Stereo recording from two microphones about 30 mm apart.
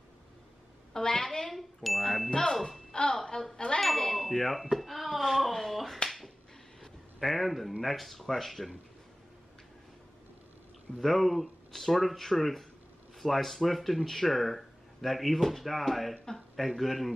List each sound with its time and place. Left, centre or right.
0.9 s a woman's voice: left
1.5 s chime: centre
2.9 s music: left
3.5 s ding: left
3.8 s a sound: centre
6.0 s finger snapping: centre
6.8 s a sound: centre
7.8 s speech: centre
11.0 s speech: centre